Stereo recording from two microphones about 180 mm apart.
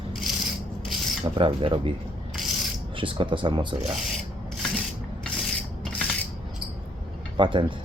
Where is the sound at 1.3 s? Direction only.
30° right (ahead or behind).